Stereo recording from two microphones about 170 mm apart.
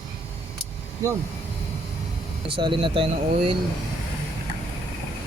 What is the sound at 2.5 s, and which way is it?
Speech, 30° right (ahead or behind).